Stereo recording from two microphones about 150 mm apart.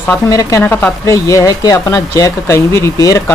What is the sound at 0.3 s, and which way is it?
Speech, 25° left (ahead or behind).